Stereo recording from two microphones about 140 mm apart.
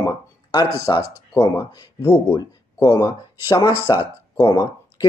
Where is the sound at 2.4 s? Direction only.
30° left (ahead or behind).